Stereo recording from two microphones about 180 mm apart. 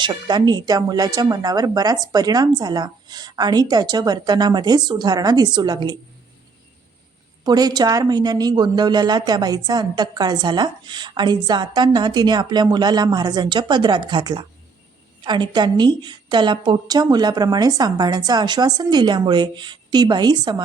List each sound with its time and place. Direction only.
0.0 s speech: 25° right (ahead or behind)
7.4 s speech: 20° right (ahead or behind)